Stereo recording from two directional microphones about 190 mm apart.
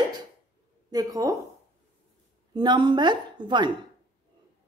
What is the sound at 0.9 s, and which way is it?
Speech, 20° right (ahead or behind).